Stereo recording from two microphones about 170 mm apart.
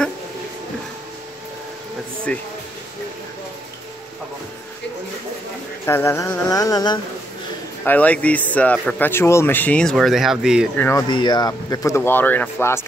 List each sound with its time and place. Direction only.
2.3 s speech: 5° left (ahead or behind)
5.9 s speech: 15° left (ahead or behind)
7.8 s speech: 10° left (ahead or behind)
10.8 s speech: 15° left (ahead or behind)
11.1 s speech: 25° left (ahead or behind)